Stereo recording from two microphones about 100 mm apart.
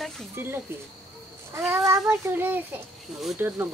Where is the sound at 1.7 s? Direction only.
25° right (ahead or behind).